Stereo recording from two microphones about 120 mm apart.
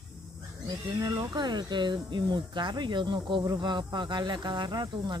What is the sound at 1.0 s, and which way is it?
Speech, 30° right (ahead or behind).